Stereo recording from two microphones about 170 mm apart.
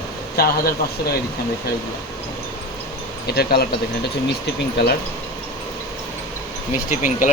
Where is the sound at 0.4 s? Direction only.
65° left (ahead or behind).